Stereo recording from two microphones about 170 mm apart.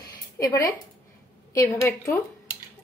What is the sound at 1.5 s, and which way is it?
Speech, 20° left (ahead or behind).